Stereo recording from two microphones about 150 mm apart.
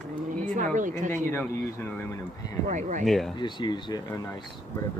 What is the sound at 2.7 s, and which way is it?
Speech, 55° right (ahead or behind).